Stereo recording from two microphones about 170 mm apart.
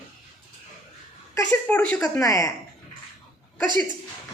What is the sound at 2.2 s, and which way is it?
Speech, 20° left (ahead or behind).